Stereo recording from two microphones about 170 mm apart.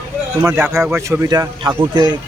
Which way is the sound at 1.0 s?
20° right (ahead or behind).